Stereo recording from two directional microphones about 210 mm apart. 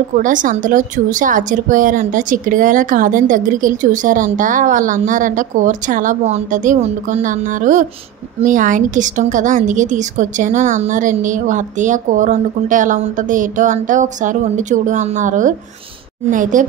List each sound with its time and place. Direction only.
0.2 s speech: 40° right (ahead or behind)